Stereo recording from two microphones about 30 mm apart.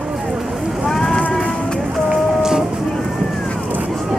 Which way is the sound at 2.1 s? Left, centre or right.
Centre.